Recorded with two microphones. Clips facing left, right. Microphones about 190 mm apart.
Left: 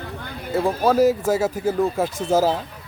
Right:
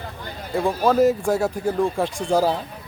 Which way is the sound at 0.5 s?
5° left (ahead or behind).